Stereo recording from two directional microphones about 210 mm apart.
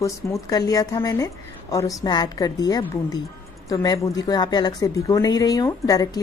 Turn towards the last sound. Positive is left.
turn(degrees=15)  # may be behind; listen again after turning